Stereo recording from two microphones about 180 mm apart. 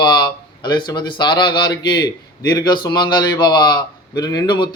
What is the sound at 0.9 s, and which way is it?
A man's voice, 25° left (ahead or behind).